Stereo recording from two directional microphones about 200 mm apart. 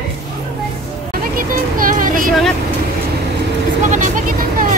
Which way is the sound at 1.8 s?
40° right (ahead or behind).